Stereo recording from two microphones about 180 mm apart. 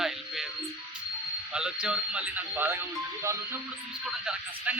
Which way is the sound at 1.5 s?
5° right (ahead or behind).